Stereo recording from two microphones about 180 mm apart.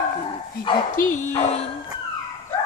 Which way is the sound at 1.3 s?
35° left (ahead or behind).